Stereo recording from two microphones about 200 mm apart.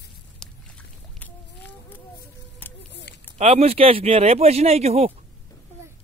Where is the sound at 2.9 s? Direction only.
60° left (ahead or behind).